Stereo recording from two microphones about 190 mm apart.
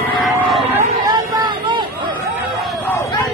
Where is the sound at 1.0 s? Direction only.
20° right (ahead or behind).